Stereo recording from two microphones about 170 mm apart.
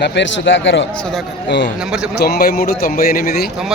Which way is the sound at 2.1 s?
70° left (ahead or behind).